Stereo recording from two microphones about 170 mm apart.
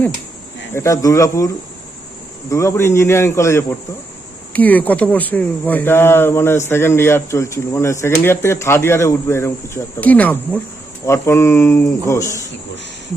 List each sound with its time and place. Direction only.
0.7 s speech: 15° left (ahead or behind)
2.5 s speech: 15° left (ahead or behind)